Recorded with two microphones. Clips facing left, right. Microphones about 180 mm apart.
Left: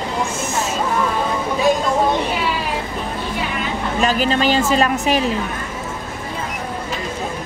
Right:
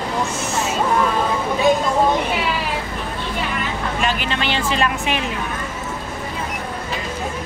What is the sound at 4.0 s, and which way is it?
Speech, 40° left (ahead or behind).